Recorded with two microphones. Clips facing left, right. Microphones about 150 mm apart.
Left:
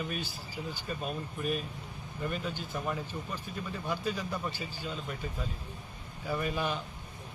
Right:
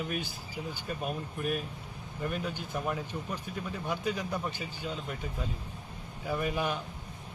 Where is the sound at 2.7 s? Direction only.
5° right (ahead or behind).